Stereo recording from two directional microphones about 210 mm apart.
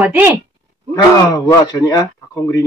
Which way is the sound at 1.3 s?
15° left (ahead or behind).